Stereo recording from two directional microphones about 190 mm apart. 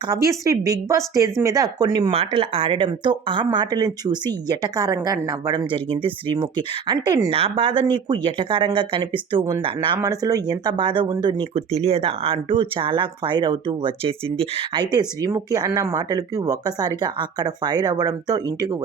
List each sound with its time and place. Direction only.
0.1 s speech: 15° right (ahead or behind)